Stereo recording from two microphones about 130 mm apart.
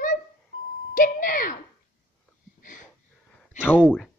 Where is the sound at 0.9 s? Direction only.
90° left.